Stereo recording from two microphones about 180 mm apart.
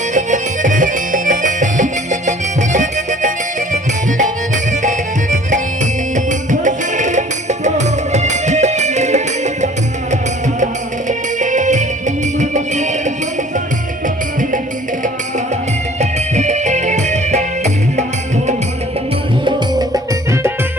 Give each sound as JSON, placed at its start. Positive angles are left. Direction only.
{"t": 0.1, "sound": "music", "side_deg": -45}
{"t": 11.3, "sound": "music", "side_deg": -45}
{"t": 16.0, "sound": "music", "side_deg": -40}